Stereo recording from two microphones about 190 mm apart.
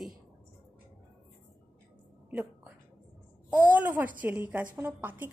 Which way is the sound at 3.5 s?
10° right (ahead or behind).